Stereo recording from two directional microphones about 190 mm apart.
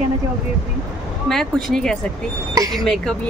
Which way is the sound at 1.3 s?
Centre (ahead or behind).